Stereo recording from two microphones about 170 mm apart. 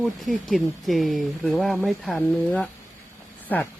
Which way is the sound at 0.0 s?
Centre (ahead or behind).